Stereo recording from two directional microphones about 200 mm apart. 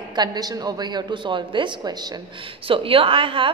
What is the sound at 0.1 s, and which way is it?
A woman's voice, 20° right (ahead or behind).